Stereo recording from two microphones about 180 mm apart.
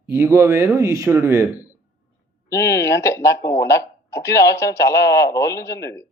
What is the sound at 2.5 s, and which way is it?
Speech, 15° left (ahead or behind).